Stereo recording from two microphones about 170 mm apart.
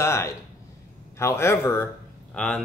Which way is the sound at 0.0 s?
15° left (ahead or behind).